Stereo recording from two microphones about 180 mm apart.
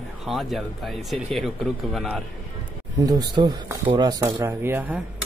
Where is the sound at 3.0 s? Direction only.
20° right (ahead or behind).